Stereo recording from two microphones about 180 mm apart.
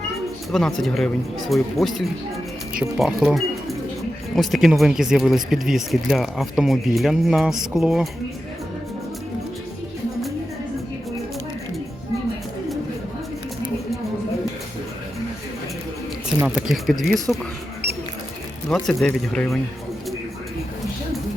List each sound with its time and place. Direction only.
0.5 s speech: centre (ahead or behind)
16.4 s speech: 5° right (ahead or behind)
18.7 s speech: 5° left (ahead or behind)